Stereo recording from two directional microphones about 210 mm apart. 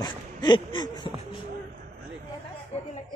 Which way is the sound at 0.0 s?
20° left (ahead or behind).